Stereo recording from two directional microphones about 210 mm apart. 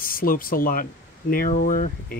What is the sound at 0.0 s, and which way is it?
Speech, 45° left (ahead or behind).